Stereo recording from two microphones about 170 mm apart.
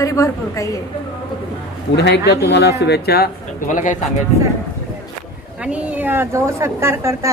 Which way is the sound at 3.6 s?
50° left (ahead or behind).